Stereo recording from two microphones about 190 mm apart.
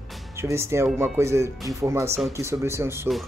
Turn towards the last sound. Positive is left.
turn(degrees=-15)  # may be behind; listen again after turning